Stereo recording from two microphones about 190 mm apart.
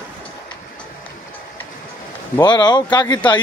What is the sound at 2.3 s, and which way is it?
Speech, 20° left (ahead or behind).